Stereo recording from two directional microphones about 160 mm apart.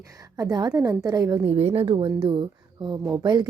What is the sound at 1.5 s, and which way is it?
Speech, 40° right (ahead or behind).